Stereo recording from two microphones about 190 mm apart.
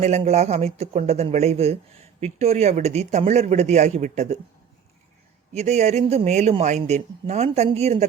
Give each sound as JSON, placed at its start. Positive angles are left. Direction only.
{"t": 0.3, "sound": "speech", "side_deg": -35}
{"t": 5.5, "sound": "speech", "side_deg": -35}